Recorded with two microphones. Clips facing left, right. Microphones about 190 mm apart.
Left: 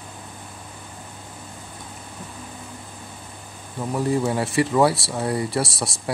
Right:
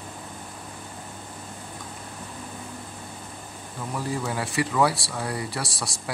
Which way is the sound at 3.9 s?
25° left (ahead or behind).